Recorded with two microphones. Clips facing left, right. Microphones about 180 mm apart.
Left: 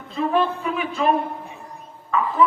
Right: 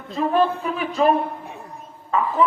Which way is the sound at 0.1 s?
40° right (ahead or behind).